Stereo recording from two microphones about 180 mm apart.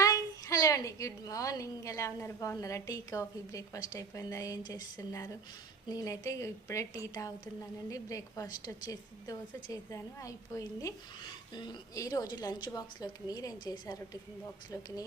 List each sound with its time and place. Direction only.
0.0 s a woman's voice: 20° left (ahead or behind)